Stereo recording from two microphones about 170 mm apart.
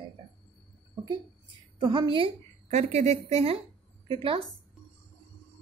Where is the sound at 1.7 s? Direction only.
25° right (ahead or behind).